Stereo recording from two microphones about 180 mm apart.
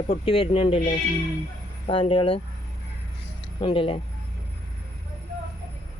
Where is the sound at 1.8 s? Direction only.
30° left (ahead or behind).